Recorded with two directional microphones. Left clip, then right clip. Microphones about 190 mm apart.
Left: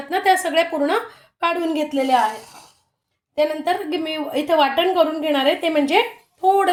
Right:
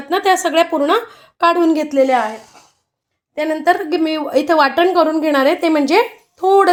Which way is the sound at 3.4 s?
40° right (ahead or behind).